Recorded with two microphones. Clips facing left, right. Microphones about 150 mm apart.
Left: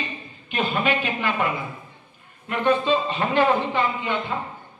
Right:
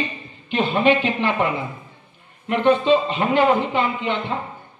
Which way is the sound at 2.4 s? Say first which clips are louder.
Right 4 dB; 20° right (ahead or behind).